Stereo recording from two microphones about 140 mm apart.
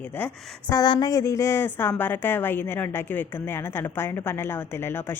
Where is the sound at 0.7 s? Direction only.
30° left (ahead or behind).